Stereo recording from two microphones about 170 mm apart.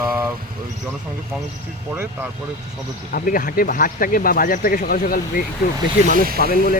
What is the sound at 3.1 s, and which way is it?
Speech, 55° left (ahead or behind).